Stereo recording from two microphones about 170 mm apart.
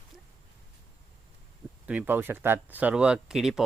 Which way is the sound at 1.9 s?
10° right (ahead or behind).